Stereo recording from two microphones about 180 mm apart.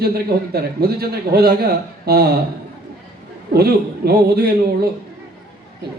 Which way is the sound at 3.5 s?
60° right (ahead or behind).